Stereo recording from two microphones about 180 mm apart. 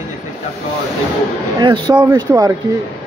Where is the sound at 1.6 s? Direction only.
25° right (ahead or behind).